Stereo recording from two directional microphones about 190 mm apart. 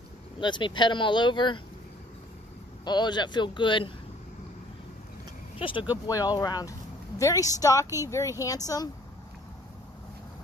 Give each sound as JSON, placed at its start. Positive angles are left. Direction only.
{"t": 0.4, "sound": "speech", "side_deg": 25}
{"t": 2.8, "sound": "speech", "side_deg": 25}
{"t": 5.6, "sound": "a woman's voice", "side_deg": 25}